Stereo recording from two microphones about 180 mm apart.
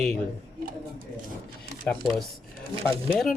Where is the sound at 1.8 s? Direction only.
Centre (ahead or behind).